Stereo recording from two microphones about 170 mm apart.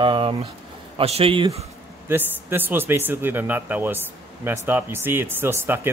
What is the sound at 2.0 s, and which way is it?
Speech, 10° right (ahead or behind).